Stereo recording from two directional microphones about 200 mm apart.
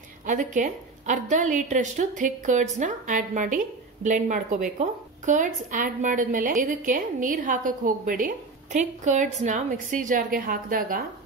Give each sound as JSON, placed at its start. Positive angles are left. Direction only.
{"t": 0.3, "sound": "a woman's voice", "side_deg": -40}